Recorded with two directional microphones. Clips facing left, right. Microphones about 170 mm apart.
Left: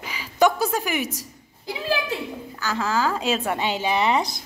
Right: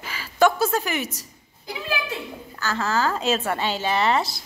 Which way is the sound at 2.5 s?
10° left (ahead or behind).